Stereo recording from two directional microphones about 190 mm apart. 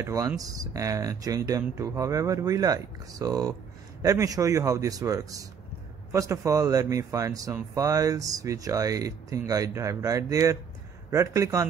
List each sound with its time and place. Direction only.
0.0 s speech: 15° right (ahead or behind)